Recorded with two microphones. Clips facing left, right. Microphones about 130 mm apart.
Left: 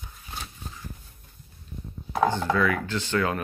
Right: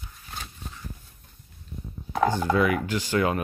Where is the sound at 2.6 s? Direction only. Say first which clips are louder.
Right 2 dB; 15° right (ahead or behind).